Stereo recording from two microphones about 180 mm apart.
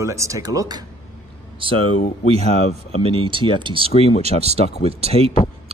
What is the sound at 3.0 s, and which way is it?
Speech, 30° right (ahead or behind).